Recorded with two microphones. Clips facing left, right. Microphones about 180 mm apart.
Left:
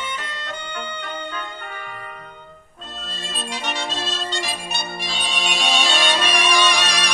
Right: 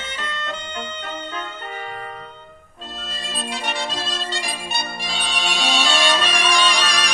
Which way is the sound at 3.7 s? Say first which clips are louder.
Even; centre (ahead or behind).